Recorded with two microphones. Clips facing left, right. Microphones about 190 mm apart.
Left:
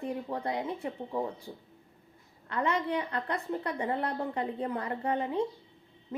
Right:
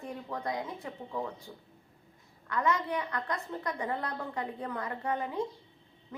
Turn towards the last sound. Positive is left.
turn(degrees=30)  # may be behind; listen again after turning